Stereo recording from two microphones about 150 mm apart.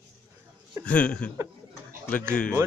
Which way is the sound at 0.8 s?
10° left (ahead or behind).